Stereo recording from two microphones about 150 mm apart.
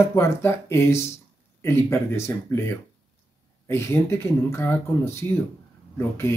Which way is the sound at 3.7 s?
15° left (ahead or behind).